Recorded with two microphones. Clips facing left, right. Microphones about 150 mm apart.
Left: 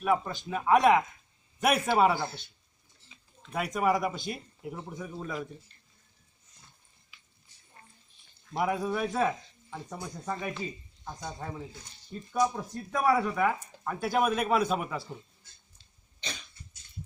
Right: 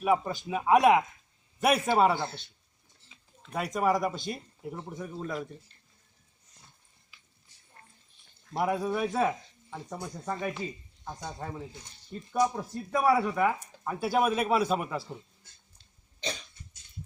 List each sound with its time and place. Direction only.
0.0 s speech: 10° right (ahead or behind)
8.5 s speech: centre (ahead or behind)